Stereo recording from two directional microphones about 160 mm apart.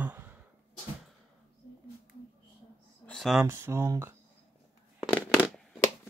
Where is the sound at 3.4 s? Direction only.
15° right (ahead or behind).